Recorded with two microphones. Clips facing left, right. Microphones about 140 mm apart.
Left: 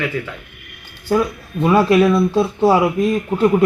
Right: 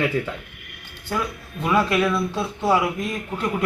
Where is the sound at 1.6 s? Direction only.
35° left (ahead or behind).